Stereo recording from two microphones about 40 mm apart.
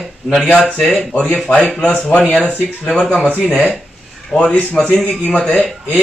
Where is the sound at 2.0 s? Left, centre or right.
Left.